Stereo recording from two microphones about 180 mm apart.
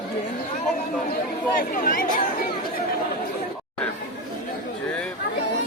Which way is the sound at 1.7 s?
50° left (ahead or behind).